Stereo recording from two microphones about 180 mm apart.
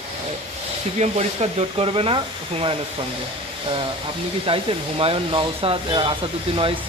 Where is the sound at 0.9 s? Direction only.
40° right (ahead or behind).